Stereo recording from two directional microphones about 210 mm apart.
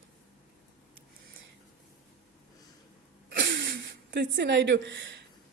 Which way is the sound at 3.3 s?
55° right (ahead or behind).